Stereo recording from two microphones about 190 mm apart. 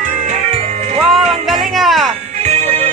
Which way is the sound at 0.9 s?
Centre (ahead or behind).